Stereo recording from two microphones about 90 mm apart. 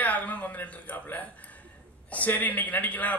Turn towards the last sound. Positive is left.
turn(degrees=20)  # may be behind; listen again after turning